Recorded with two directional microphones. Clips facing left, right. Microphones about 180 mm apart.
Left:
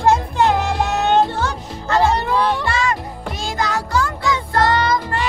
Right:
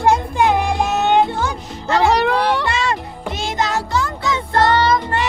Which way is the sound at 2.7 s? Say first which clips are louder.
Even; 25° right (ahead or behind).